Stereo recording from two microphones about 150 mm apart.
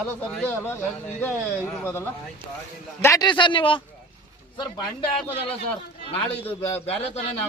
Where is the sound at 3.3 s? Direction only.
30° left (ahead or behind).